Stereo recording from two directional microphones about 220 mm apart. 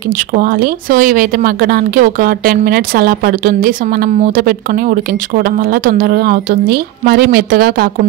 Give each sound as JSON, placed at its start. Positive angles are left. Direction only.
{"t": 0.3, "sound": "speech", "side_deg": -40}